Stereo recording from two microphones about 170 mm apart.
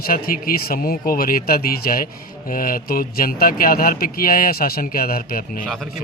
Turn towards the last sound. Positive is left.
turn(degrees=55)  # may be behind; listen again after turning